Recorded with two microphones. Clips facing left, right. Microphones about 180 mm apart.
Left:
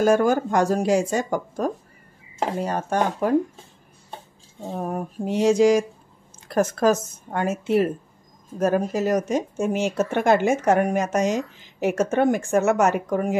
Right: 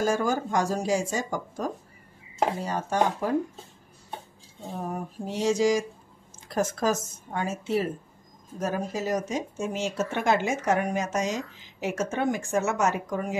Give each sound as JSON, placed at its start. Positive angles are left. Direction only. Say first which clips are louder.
{"t": 0.0, "sound": "speech", "louder": "left 7 dB", "side_deg": 60}
{"t": 4.7, "sound": "speech", "louder": "left 5 dB", "side_deg": 60}